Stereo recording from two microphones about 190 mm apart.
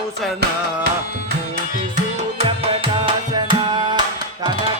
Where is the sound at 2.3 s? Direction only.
30° right (ahead or behind).